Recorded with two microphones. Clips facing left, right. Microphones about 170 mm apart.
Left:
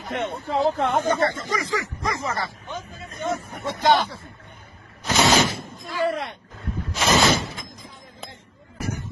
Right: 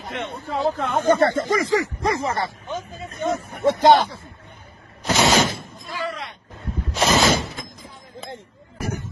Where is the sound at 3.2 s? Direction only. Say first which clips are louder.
Right 4 dB; 15° right (ahead or behind).